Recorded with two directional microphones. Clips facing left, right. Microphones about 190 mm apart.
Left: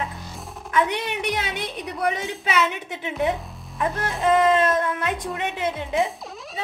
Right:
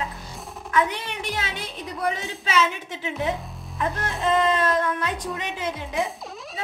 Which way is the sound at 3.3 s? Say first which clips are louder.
Left 1 dB; centre (ahead or behind).